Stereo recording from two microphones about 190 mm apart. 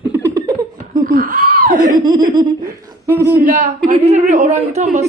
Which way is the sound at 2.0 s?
20° right (ahead or behind).